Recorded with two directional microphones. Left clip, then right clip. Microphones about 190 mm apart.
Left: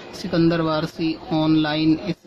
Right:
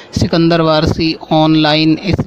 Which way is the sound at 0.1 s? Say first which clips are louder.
Right 8 dB; 50° right (ahead or behind).